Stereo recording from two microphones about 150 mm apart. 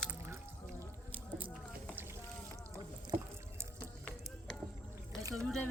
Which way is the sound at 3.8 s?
5° left (ahead or behind).